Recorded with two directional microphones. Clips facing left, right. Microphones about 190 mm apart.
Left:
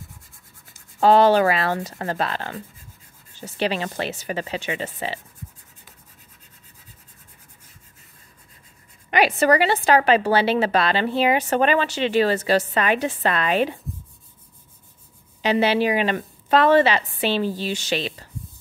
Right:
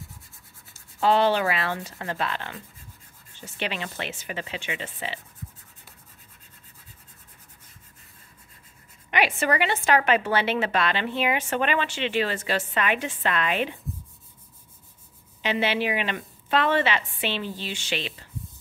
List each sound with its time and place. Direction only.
1.0 s a woman's voice: 40° left (ahead or behind)
9.1 s a woman's voice: 35° left (ahead or behind)
15.4 s a woman's voice: 40° left (ahead or behind)